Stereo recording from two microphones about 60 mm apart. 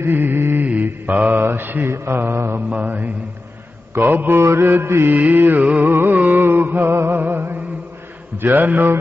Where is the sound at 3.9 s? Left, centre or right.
Right.